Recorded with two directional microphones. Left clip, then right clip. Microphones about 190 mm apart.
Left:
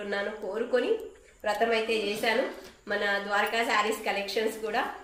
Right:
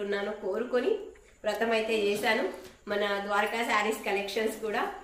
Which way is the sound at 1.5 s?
10° right (ahead or behind).